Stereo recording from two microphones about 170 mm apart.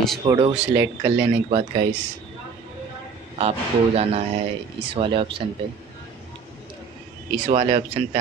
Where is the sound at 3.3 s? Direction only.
35° right (ahead or behind).